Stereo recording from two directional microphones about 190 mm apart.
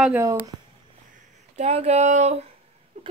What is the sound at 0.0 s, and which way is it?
Brass instrument, 15° right (ahead or behind).